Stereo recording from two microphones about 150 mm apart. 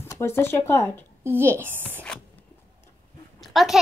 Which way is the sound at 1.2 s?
15° right (ahead or behind).